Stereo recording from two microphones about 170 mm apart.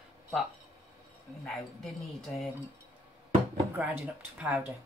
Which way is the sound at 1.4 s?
Centre (ahead or behind).